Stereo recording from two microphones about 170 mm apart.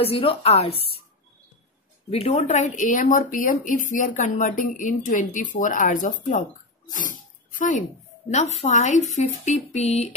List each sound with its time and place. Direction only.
0.0 s speech: 35° left (ahead or behind)
2.0 s speech: 35° left (ahead or behind)
6.9 s dog: 50° left (ahead or behind)
8.3 s speech: 40° left (ahead or behind)